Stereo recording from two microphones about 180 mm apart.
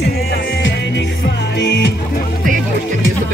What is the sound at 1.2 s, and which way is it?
Music, 65° left (ahead or behind).